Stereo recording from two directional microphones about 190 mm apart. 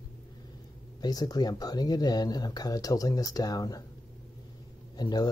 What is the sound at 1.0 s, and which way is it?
Speech, 20° left (ahead or behind).